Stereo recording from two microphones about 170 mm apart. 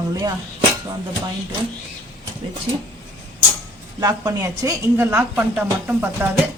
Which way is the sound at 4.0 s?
20° right (ahead or behind).